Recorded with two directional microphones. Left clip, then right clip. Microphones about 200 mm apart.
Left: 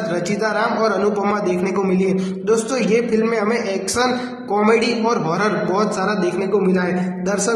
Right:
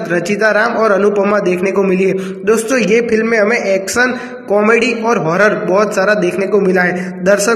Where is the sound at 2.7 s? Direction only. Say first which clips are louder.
Right 6 dB; 20° right (ahead or behind).